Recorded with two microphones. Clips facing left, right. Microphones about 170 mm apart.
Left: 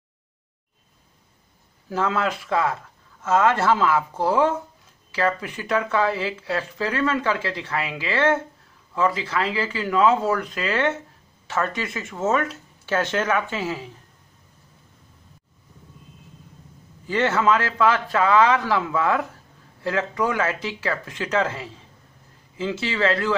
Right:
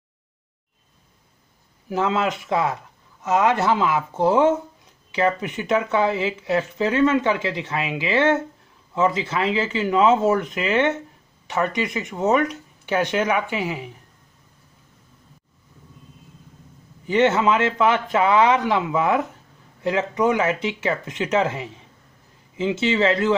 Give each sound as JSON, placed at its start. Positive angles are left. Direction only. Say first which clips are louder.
{"t": 1.9, "sound": "a man's voice", "louder": "right 2 dB", "side_deg": -20}
{"t": 17.0, "sound": "a man's voice", "louder": "right 3 dB", "side_deg": -20}